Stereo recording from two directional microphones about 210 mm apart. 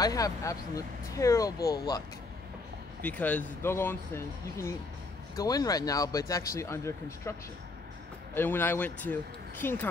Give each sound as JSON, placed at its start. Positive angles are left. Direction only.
{"t": 0.0, "sound": "speech", "side_deg": 15}
{"t": 8.4, "sound": "speech", "side_deg": 10}